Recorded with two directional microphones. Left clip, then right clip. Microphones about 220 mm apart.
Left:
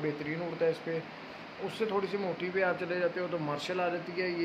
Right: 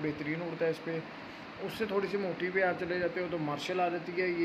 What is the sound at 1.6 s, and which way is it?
Speech, 5° left (ahead or behind).